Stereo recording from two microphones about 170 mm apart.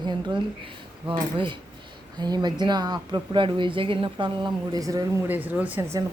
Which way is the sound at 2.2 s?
25° right (ahead or behind).